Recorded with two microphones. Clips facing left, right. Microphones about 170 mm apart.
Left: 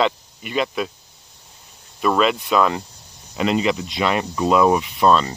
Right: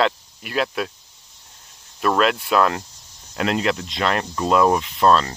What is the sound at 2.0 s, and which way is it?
Speech, centre (ahead or behind).